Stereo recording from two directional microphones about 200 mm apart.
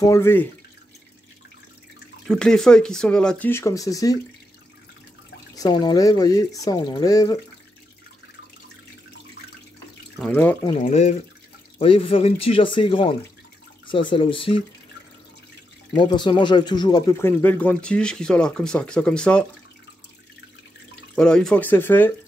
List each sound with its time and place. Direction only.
0.0 s speech: 15° left (ahead or behind)
2.2 s speech: 5° left (ahead or behind)
5.6 s speech: 20° left (ahead or behind)
10.1 s speech: 5° left (ahead or behind)
10.6 s speech: 25° left (ahead or behind)
15.9 s speech: 20° left (ahead or behind); by 19.4 s 5° left (ahead or behind)
21.1 s speech: 5° left (ahead or behind)